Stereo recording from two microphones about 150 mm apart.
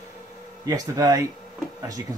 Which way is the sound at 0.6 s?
25° right (ahead or behind).